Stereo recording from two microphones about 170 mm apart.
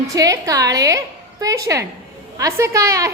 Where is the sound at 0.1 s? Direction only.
20° right (ahead or behind).